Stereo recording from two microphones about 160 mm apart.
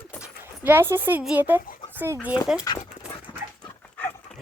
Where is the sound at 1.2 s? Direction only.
10° right (ahead or behind).